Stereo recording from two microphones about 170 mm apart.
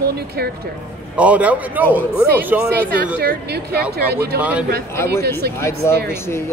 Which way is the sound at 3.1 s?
70° right (ahead or behind).